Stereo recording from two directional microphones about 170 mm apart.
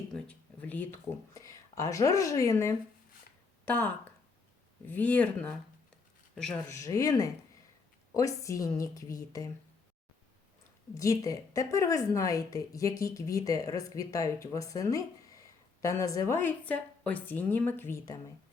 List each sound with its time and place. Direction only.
0.1 s speech: 10° left (ahead or behind)
6.7 s a woman's voice: 20° left (ahead or behind)
10.9 s a woman's voice: 20° left (ahead or behind)